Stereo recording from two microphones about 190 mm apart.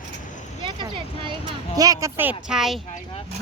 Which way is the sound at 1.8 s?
15° right (ahead or behind).